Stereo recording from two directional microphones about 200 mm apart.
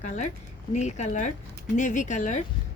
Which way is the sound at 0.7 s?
35° left (ahead or behind).